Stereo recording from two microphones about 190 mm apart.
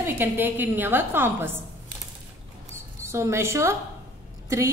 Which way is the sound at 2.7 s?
15° right (ahead or behind).